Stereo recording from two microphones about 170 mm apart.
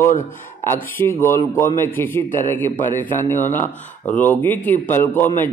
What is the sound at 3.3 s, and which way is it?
Speech, 45° left (ahead or behind).